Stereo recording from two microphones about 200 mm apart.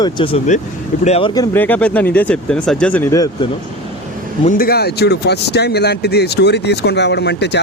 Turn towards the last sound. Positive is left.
turn(degrees=60)  # may be behind; listen again after turning